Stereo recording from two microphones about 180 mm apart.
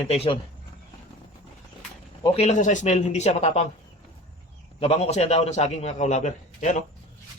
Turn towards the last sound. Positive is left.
turn(degrees=40)  # may be behind; listen again after turning